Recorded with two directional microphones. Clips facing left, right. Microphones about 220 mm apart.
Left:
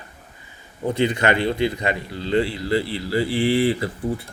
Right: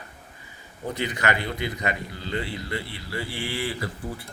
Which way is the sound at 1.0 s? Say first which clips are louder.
Left 7 dB; 25° left (ahead or behind).